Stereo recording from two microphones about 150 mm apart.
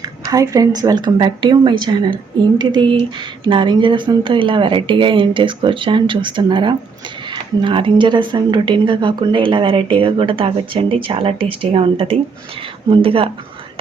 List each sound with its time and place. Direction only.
0.3 s a woman's voice: 25° right (ahead or behind)